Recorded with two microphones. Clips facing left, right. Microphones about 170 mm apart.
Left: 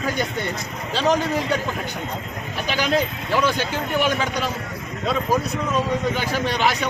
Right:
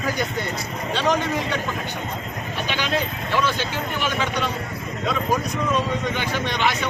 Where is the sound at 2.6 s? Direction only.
40° left (ahead or behind).